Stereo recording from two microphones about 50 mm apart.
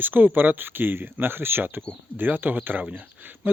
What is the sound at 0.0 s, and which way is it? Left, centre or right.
Speech, right.